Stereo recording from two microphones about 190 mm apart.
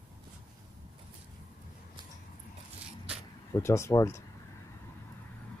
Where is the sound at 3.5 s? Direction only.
15° left (ahead or behind).